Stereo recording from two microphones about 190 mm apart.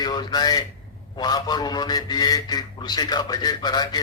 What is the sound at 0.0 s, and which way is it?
A man's voice, 20° left (ahead or behind).